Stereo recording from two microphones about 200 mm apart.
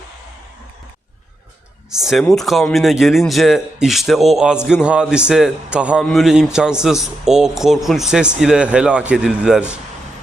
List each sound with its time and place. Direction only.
1.9 s a man's voice: centre (ahead or behind)